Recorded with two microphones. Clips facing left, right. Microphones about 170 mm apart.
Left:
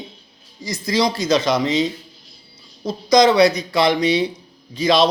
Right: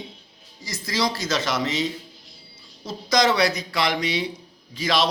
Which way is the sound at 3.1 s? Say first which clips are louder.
Left 7 dB; 20° left (ahead or behind).